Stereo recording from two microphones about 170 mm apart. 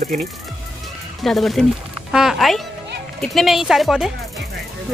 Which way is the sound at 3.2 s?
Centre (ahead or behind).